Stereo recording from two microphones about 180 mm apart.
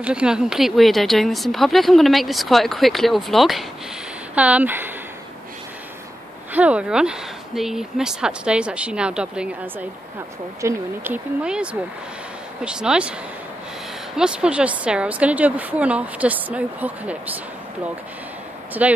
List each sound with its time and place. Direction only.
0.0 s a woman's voice: 5° right (ahead or behind)
6.5 s a woman's voice: 5° right (ahead or behind)
14.1 s a woman's voice: 5° right (ahead or behind)
18.8 s a woman's voice: 10° right (ahead or behind)